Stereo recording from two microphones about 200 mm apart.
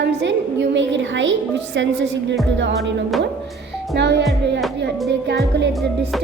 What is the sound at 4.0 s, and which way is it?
Music, 60° right (ahead or behind).